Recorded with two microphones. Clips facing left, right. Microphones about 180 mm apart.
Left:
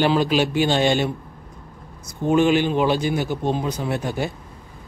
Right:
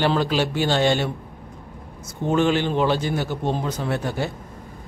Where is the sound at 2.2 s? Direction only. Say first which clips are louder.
Left 3 dB; 15° left (ahead or behind).